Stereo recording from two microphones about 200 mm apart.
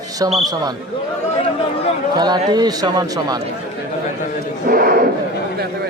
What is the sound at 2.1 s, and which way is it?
Speech, 20° right (ahead or behind).